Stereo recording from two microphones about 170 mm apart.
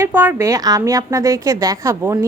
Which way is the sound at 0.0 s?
10° right (ahead or behind).